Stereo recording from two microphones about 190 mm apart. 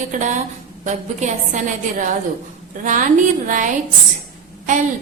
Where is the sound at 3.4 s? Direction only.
45° right (ahead or behind).